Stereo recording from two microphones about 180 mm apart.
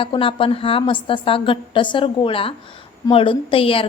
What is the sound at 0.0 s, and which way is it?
A woman's voice, 30° left (ahead or behind).